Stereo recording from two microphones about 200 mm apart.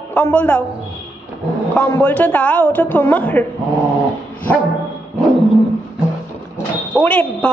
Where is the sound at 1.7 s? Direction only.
10° left (ahead or behind).